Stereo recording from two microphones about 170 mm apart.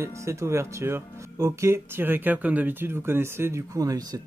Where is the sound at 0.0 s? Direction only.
15° right (ahead or behind).